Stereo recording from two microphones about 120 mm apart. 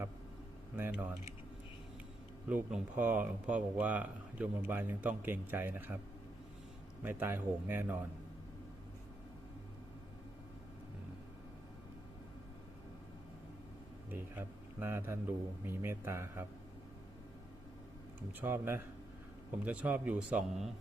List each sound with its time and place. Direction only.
0.8 s speech: 15° right (ahead or behind)
2.5 s speech: 15° right (ahead or behind)
7.0 s speech: 15° right (ahead or behind)
14.1 s a man's voice: 20° right (ahead or behind)
18.3 s a man's voice: 20° right (ahead or behind)